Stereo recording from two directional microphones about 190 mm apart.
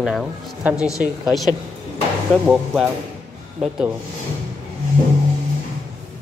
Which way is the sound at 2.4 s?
5° right (ahead or behind).